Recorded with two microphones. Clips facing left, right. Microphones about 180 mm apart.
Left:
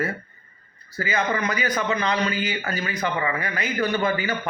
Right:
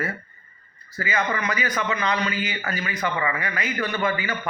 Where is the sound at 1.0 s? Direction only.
35° left (ahead or behind).